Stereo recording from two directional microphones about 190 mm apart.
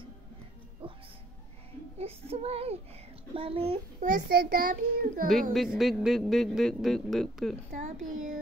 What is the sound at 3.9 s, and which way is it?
A child's voice, 50° right (ahead or behind).